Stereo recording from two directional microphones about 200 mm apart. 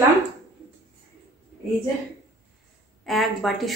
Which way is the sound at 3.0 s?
Centre (ahead or behind).